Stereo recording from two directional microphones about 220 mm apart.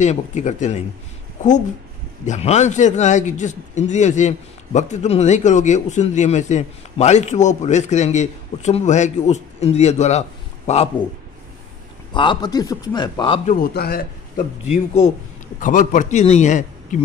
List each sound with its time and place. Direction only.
0.0 s a man's voice: 30° left (ahead or behind)
12.1 s speech: 20° left (ahead or behind)
13.6 s a man's voice: 45° left (ahead or behind)
15.6 s a man's voice: 35° left (ahead or behind)